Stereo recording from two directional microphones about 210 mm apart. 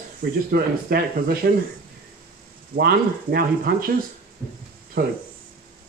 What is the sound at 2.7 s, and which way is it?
Speech, 45° right (ahead or behind).